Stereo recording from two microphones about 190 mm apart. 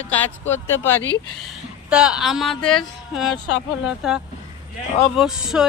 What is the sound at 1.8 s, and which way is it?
Speech, 5° right (ahead or behind).